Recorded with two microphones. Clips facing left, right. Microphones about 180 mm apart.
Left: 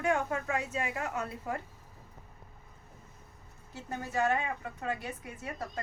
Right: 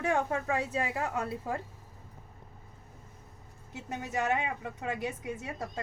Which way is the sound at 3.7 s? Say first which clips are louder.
Even; 20° right (ahead or behind).